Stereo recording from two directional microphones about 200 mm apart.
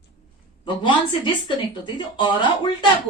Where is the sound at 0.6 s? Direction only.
25° left (ahead or behind).